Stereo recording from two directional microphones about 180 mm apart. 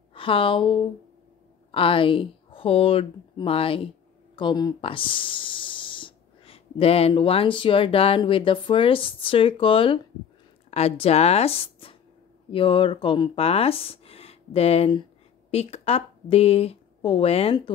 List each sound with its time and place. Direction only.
0.1 s a woman's voice: 30° left (ahead or behind)